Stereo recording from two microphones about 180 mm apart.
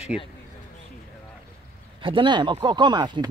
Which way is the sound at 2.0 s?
30° right (ahead or behind).